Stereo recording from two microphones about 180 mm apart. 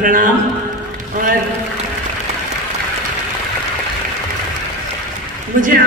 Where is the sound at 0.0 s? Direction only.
50° right (ahead or behind).